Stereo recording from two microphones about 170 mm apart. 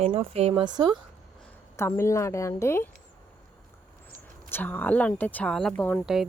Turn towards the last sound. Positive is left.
turn(degrees=10)  # may be behind; listen again after turning